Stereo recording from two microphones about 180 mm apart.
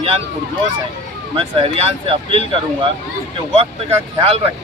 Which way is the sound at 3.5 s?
35° right (ahead or behind).